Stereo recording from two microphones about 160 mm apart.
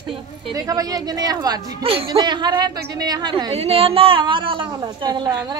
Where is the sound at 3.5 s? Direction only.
40° right (ahead or behind).